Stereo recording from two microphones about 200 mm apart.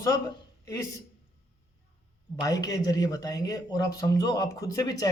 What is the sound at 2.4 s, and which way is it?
A man's voice, 20° left (ahead or behind).